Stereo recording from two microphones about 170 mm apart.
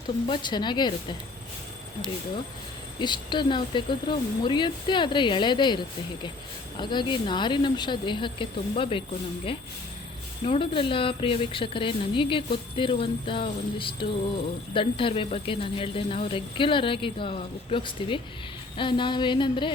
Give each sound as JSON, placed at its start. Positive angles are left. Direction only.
{"t": 0.3, "sound": "speech", "side_deg": 25}
{"t": 3.0, "sound": "speech", "side_deg": 25}
{"t": 10.4, "sound": "speech", "side_deg": 35}